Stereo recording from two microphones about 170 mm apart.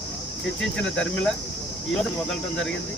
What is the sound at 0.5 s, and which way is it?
Speech, 5° left (ahead or behind).